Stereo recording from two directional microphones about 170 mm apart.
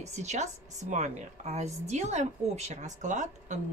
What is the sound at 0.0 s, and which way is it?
Speech, 45° right (ahead or behind).